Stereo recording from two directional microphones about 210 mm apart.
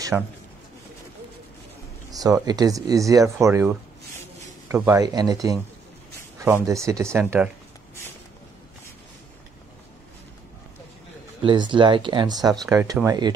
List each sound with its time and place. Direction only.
0.1 s a man's voice: 5° right (ahead or behind)
2.1 s speech: 15° right (ahead or behind)
11.4 s speech: 20° right (ahead or behind)